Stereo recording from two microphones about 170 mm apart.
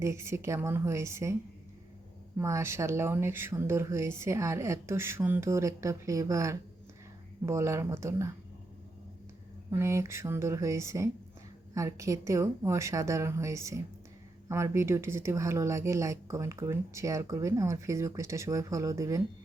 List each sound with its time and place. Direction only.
0.0 s speech: 15° right (ahead or behind)
2.4 s speech: 15° right (ahead or behind)
9.6 s speech: 15° right (ahead or behind)